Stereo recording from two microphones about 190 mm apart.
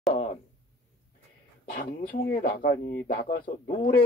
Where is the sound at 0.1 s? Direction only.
35° left (ahead or behind).